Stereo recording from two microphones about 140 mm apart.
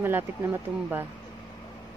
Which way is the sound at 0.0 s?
15° right (ahead or behind).